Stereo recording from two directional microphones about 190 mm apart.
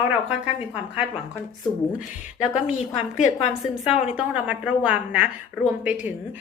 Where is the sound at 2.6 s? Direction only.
35° left (ahead or behind).